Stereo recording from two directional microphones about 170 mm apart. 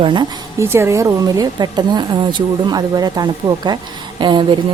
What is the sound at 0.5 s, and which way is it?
A woman's voice, 15° right (ahead or behind).